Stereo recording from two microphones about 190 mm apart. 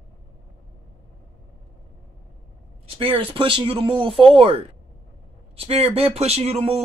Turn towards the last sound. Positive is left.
turn(degrees=-35)  # may be behind; listen again after turning